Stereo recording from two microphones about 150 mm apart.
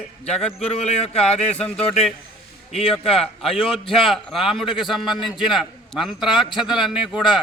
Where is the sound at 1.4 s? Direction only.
10° left (ahead or behind).